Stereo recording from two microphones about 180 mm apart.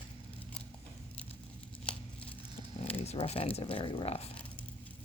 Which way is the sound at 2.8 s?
35° left (ahead or behind).